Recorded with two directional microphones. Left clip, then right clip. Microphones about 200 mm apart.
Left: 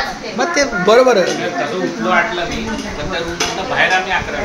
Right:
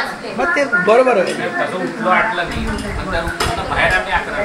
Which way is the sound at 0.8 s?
30° left (ahead or behind).